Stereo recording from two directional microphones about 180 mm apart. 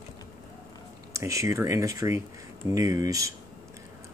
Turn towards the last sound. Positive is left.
turn(degrees=-20)  # may be behind; listen again after turning